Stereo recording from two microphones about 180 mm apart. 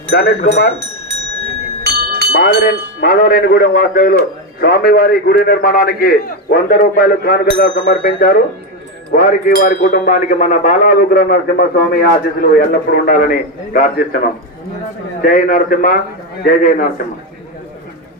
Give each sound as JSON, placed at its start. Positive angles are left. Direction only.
{"t": 0.1, "sound": "a man's voice", "side_deg": 60}
{"t": 1.8, "sound": "bell", "side_deg": -60}
{"t": 2.3, "sound": "a man's voice", "side_deg": 70}
{"t": 15.2, "sound": "speech", "side_deg": 50}